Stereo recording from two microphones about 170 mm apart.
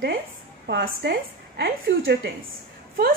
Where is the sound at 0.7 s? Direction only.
70° right (ahead or behind).